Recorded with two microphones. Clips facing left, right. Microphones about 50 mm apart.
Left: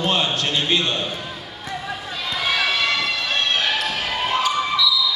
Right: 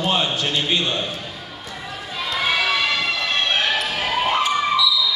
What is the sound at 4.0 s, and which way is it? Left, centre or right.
Basketball bounce, right.